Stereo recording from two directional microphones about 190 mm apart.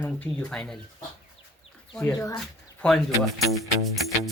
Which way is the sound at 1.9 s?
10° left (ahead or behind).